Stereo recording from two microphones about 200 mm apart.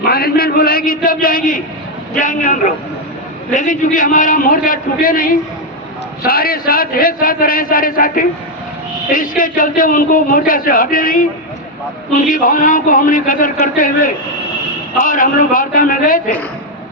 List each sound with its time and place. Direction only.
0.1 s a man's voice: 50° left (ahead or behind)
12.3 s a man's voice: 45° left (ahead or behind)